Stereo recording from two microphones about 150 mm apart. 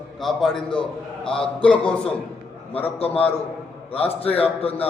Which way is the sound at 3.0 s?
40° left (ahead or behind).